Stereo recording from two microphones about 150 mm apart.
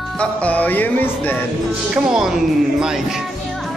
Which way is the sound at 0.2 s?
10° left (ahead or behind).